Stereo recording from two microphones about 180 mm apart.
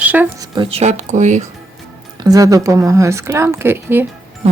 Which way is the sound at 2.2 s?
20° right (ahead or behind).